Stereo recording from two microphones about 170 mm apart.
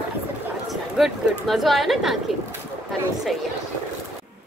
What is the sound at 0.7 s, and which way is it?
Speech, centre (ahead or behind).